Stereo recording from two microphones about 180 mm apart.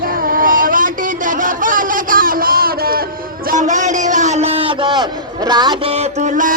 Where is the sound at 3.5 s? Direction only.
45° right (ahead or behind).